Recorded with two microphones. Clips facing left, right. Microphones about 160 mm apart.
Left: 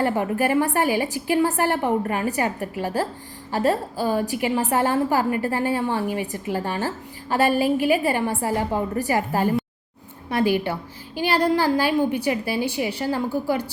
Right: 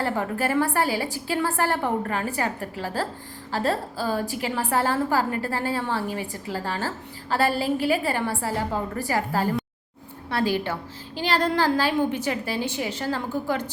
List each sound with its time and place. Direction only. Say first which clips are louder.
0.0 s a woman's voice: left 4 dB; 15° left (ahead or behind)